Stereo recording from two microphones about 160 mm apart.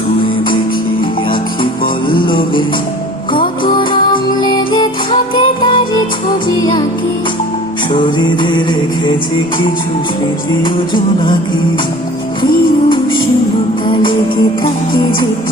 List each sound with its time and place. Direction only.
2.2 s music: 30° left (ahead or behind)
7.9 s music: 30° left (ahead or behind)
10.6 s music: 30° left (ahead or behind)
13.8 s music: 30° left (ahead or behind)